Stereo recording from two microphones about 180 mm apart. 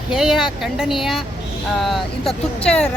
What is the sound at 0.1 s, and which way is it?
Speech, 5° right (ahead or behind).